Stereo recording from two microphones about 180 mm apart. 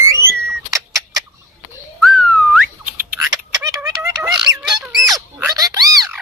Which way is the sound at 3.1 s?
15° right (ahead or behind).